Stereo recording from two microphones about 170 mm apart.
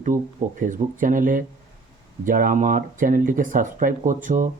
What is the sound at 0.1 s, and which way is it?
Speech, 15° right (ahead or behind).